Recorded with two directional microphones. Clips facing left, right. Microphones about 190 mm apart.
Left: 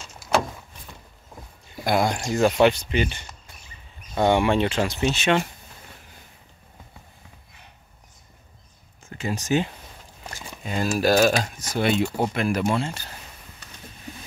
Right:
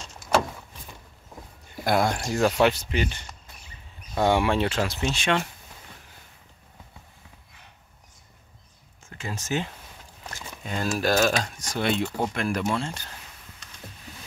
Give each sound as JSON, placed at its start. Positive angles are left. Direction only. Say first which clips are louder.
{"t": 1.9, "sound": "speech", "louder": "left 1 dB", "side_deg": 5}
{"t": 4.1, "sound": "speech", "louder": "left 2 dB", "side_deg": 0}
{"t": 9.2, "sound": "speech", "louder": "left 6 dB", "side_deg": 15}